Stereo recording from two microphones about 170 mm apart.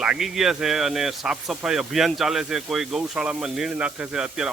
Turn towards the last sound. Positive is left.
turn(degrees=-5)  # may be behind; listen again after turning